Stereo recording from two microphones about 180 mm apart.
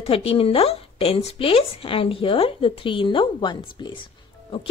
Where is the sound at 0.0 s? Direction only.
35° left (ahead or behind).